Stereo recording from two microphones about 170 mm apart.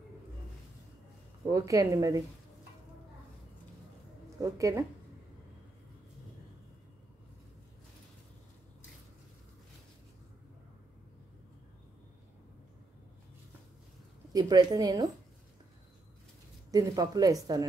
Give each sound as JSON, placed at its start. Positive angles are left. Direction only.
{"t": 1.5, "sound": "speech", "side_deg": -20}
{"t": 4.4, "sound": "speech", "side_deg": -20}
{"t": 14.3, "sound": "speech", "side_deg": -25}
{"t": 16.7, "sound": "speech", "side_deg": -20}